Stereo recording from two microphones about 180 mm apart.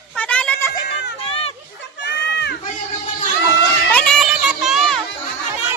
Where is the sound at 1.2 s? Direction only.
30° left (ahead or behind).